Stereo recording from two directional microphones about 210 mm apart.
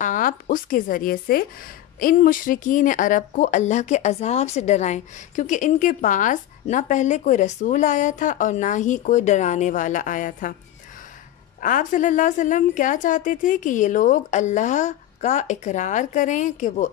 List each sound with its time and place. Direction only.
0.0 s a woman's voice: 40° left (ahead or behind)
11.6 s speech: 40° left (ahead or behind)